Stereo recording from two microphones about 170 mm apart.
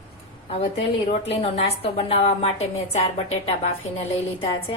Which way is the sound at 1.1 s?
35° left (ahead or behind).